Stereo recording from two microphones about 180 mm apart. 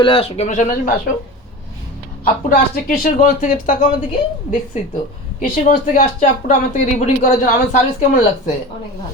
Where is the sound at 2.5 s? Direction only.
50° left (ahead or behind).